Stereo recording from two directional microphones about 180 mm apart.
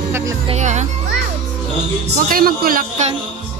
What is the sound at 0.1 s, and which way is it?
Speech, 15° right (ahead or behind).